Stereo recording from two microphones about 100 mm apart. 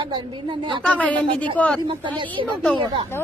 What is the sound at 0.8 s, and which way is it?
Speech, 15° left (ahead or behind).